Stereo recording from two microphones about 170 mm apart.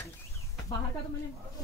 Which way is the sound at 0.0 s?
15° left (ahead or behind).